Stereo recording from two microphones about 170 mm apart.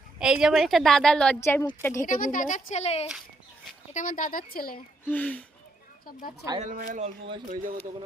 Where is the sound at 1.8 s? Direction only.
15° left (ahead or behind).